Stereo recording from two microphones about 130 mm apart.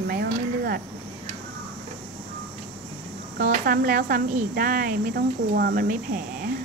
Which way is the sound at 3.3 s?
90° right.